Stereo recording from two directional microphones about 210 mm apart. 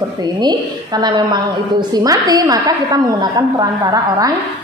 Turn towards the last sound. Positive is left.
turn(degrees=-15)  # may be behind; listen again after turning